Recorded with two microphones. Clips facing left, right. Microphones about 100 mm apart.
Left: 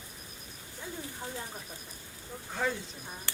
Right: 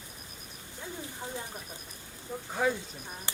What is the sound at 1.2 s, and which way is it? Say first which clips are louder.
Bird: right 2 dB; 20° right (ahead or behind).